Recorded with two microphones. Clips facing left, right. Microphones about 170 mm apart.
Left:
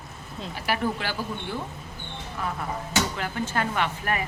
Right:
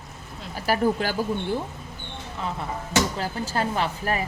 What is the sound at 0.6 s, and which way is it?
Speech, 40° right (ahead or behind).